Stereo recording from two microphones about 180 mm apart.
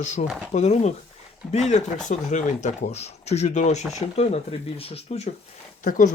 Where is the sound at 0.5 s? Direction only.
40° left (ahead or behind).